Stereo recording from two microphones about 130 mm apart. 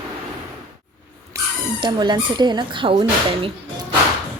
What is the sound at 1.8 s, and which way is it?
Speech, 35° right (ahead or behind).